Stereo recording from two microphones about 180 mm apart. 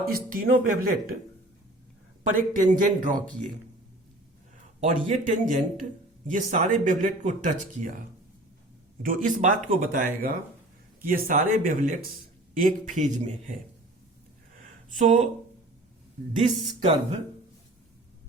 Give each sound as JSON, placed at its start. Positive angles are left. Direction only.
{"t": 0.1, "sound": "speech", "side_deg": -50}
{"t": 2.3, "sound": "speech", "side_deg": -45}
{"t": 4.8, "sound": "speech", "side_deg": -45}
{"t": 9.0, "sound": "speech", "side_deg": -50}
{"t": 14.8, "sound": "speech", "side_deg": -45}
{"t": 16.4, "sound": "a woman's voice", "side_deg": -35}